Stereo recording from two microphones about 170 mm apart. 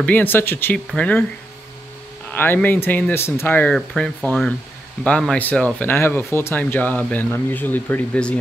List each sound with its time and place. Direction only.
0.0 s speech: 10° left (ahead or behind)
2.3 s speech: 10° left (ahead or behind)